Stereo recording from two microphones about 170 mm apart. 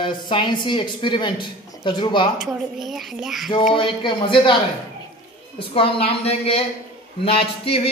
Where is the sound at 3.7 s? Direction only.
30° left (ahead or behind).